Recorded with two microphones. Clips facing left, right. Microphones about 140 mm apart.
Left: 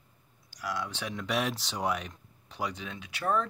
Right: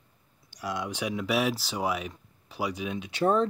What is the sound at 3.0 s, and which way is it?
Speech, 25° right (ahead or behind).